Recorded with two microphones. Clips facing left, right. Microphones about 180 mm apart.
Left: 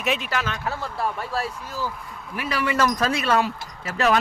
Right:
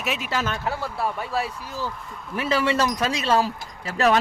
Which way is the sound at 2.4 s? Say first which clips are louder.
Right 1 dB; 25° right (ahead or behind).